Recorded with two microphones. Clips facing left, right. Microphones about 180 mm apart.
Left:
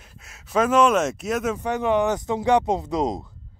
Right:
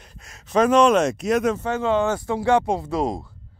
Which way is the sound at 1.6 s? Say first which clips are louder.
Even; 15° left (ahead or behind).